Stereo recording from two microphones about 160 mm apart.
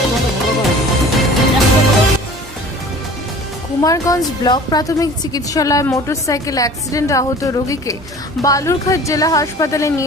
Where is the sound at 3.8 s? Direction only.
20° left (ahead or behind).